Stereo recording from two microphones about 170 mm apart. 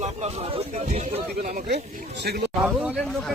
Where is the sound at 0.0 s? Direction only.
40° right (ahead or behind); by 2.5 s 80° right.